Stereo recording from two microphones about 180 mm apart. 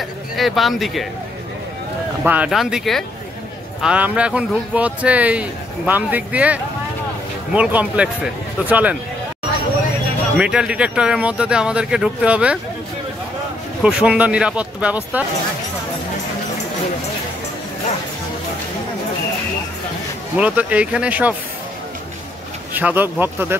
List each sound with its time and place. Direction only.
0.4 s speech: centre (ahead or behind)
2.2 s speech: 10° right (ahead or behind)
10.3 s speech: 5° right (ahead or behind)
13.8 s speech: 5° right (ahead or behind)
20.3 s speech: 5° right (ahead or behind)
22.8 s speech: 10° right (ahead or behind)